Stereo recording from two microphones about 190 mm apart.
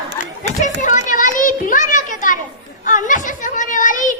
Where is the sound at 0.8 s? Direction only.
40° left (ahead or behind).